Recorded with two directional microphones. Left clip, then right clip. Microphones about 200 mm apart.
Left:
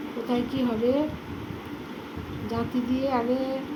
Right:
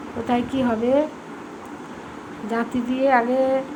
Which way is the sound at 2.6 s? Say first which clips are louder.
Right 5 dB; 25° right (ahead or behind).